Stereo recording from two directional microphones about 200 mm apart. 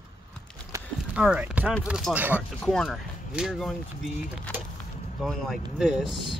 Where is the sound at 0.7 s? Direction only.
15° right (ahead or behind).